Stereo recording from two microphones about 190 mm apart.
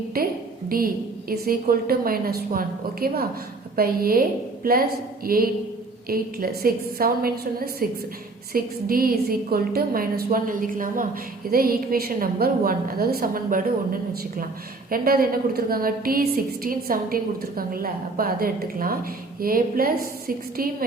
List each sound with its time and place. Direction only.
0.1 s a woman's voice: 50° right (ahead or behind)